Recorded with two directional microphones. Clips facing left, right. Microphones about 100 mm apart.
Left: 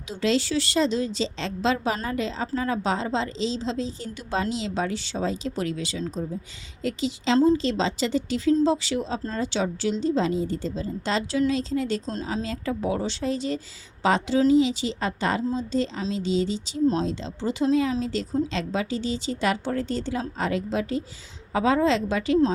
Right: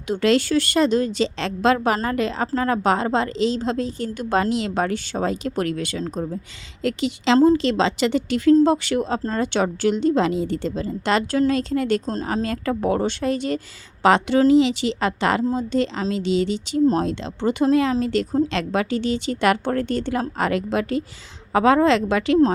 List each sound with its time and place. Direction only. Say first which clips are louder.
0.1 s speech: right 6 dB; 60° right (ahead or behind)
6.8 s a woman's voice: right 5 dB; 70° right (ahead or behind)
15.5 s a woman's voice: right 4 dB; 65° right (ahead or behind)